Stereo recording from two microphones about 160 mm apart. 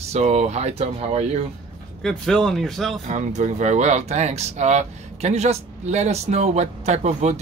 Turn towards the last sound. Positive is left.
turn(degrees=-45)  # may be behind; listen again after turning